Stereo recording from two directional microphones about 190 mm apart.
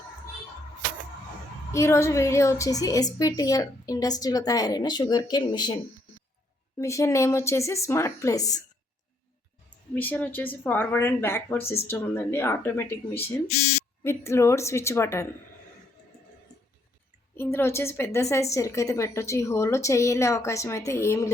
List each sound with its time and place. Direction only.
1.7 s a woman's voice: 15° left (ahead or behind)
6.7 s a woman's voice: 15° left (ahead or behind)
9.9 s a woman's voice: 10° left (ahead or behind)
13.5 s speech: 35° left (ahead or behind)
14.0 s a woman's voice: 15° left (ahead or behind)
17.3 s a woman's voice: 10° left (ahead or behind)